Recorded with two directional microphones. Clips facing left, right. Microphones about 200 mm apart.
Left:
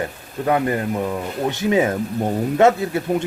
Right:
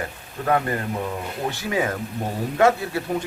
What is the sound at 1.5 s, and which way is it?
Speech, 25° left (ahead or behind).